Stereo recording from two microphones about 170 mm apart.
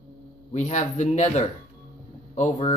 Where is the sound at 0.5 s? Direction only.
45° left (ahead or behind).